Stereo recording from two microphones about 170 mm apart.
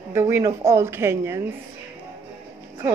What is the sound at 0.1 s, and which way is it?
Speech, 15° right (ahead or behind).